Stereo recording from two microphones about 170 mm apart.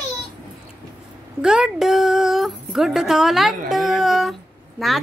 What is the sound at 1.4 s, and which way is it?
Speech, 5° right (ahead or behind).